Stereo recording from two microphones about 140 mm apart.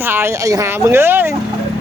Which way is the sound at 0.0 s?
15° right (ahead or behind).